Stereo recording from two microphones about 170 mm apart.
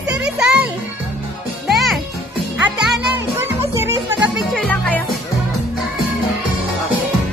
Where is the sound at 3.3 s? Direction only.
15° right (ahead or behind).